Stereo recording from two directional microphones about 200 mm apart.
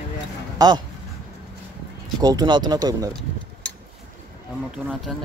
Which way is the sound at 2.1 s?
20° right (ahead or behind).